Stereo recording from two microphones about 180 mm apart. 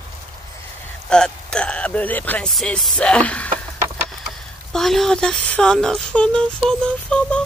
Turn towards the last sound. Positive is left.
turn(degrees=5)  # may be behind; listen again after turning